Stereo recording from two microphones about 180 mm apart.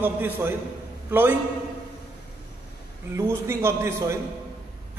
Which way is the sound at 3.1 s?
15° right (ahead or behind).